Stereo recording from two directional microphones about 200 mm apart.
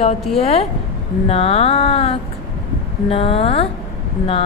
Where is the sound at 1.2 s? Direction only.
30° left (ahead or behind).